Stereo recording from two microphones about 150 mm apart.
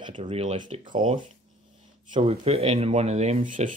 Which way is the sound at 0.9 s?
30° right (ahead or behind).